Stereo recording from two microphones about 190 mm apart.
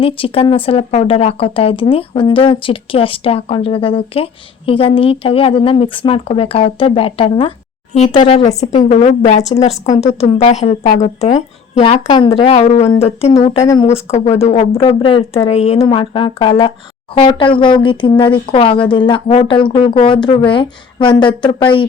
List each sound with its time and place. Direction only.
0.0 s a woman's voice: 30° left (ahead or behind)
13.6 s speech: 15° left (ahead or behind)
13.8 s a woman's voice: 35° left (ahead or behind)